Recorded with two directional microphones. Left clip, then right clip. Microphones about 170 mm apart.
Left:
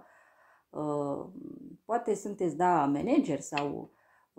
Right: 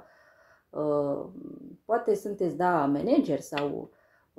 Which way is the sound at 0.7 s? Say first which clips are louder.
Right 6 dB; 25° left (ahead or behind).